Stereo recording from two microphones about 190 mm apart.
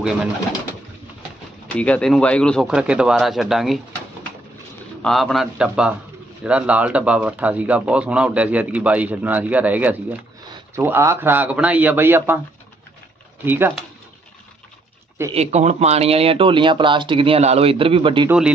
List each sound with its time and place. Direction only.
1.8 s speech: 5° left (ahead or behind)
5.0 s speech: centre (ahead or behind)
13.4 s speech: 10° right (ahead or behind)
15.3 s speech: 35° right (ahead or behind)